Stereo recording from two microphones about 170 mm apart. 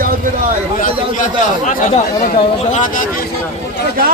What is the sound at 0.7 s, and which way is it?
Speech, 50° left (ahead or behind).